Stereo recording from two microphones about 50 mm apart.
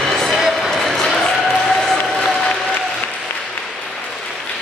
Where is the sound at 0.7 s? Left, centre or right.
Centre.